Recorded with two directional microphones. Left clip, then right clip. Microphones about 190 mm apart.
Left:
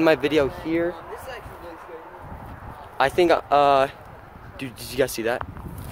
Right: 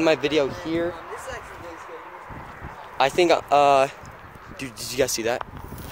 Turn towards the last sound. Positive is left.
turn(degrees=0)  # may be behind; listen again after turning